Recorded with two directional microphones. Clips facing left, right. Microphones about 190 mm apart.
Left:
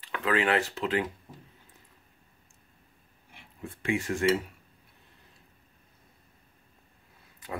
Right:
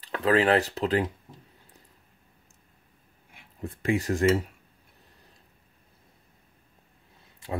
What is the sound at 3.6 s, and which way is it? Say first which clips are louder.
Cutlery: right 4 dB; 40° right (ahead or behind).